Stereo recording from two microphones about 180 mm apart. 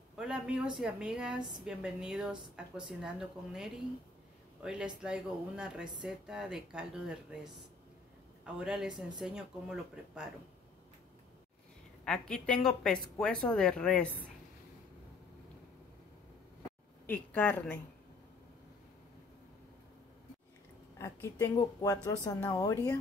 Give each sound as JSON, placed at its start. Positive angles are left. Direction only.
{"t": 0.1, "sound": "speech", "side_deg": -5}
{"t": 12.0, "sound": "speech", "side_deg": 5}
{"t": 17.0, "sound": "a woman's voice", "side_deg": 10}
{"t": 21.0, "sound": "speech", "side_deg": 15}